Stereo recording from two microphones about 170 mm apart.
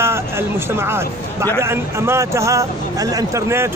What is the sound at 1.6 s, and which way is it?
Speech, 15° right (ahead or behind).